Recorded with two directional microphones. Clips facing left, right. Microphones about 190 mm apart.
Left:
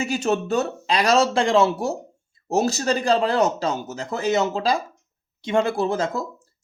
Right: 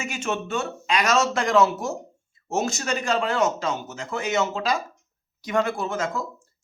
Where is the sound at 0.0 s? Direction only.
35° left (ahead or behind).